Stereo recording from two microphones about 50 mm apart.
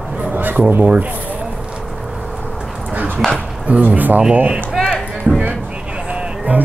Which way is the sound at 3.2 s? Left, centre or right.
Centre.